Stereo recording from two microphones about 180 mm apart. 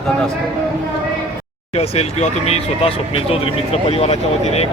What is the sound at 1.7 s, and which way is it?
Speech, 35° left (ahead or behind).